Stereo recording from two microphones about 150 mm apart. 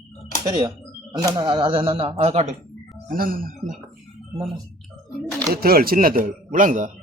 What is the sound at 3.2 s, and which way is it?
Speech, 70° right (ahead or behind).